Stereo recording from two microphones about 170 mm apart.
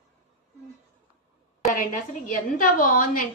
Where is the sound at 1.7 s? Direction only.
50° left (ahead or behind).